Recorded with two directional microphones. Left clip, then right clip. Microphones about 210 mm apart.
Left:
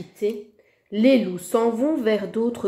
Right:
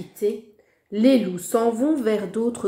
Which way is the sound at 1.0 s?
10° left (ahead or behind).